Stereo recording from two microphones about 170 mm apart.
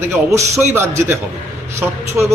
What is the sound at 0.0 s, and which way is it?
Speech, 15° right (ahead or behind).